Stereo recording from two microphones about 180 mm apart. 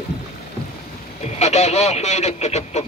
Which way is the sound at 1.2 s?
40° left (ahead or behind).